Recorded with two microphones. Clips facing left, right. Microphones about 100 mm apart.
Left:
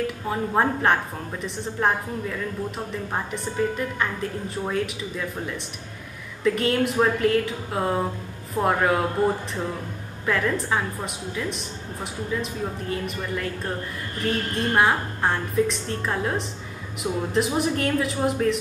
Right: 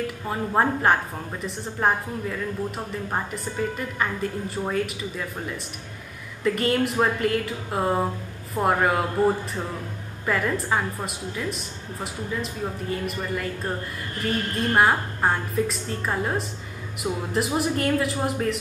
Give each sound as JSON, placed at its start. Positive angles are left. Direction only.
{"t": 0.0, "sound": "a woman's voice", "side_deg": 0}
{"t": 3.7, "sound": "a woman's voice", "side_deg": 0}
{"t": 6.4, "sound": "a woman's voice", "side_deg": 0}